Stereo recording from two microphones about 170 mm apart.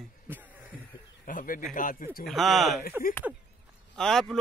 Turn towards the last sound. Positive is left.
turn(degrees=0)  # may be behind; listen again after turning